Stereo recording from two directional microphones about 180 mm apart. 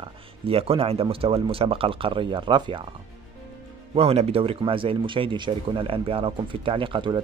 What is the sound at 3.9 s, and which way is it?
Speech, 35° right (ahead or behind).